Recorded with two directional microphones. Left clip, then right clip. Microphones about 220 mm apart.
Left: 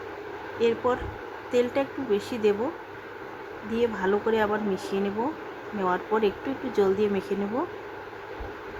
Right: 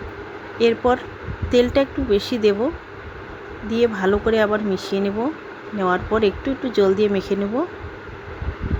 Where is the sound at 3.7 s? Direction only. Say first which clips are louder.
Right 7 dB; 15° right (ahead or behind).